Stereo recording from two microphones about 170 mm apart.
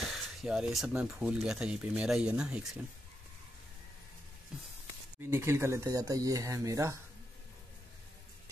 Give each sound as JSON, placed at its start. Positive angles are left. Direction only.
{"t": 0.1, "sound": "speech", "side_deg": -5}
{"t": 5.2, "sound": "speech", "side_deg": -15}